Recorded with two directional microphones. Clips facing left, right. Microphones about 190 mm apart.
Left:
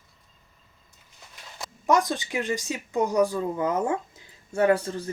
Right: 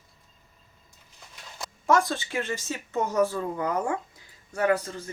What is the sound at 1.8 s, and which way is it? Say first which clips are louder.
Speech: left 1 dB; 15° left (ahead or behind).